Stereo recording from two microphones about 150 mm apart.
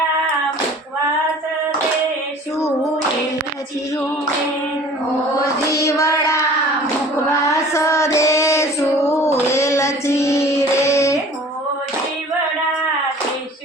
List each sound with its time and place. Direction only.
2.6 s clapping: 20° left (ahead or behind)
5.7 s child singing: 20° left (ahead or behind)
7.4 s female singing: 20° left (ahead or behind)
9.5 s child singing: 20° left (ahead or behind)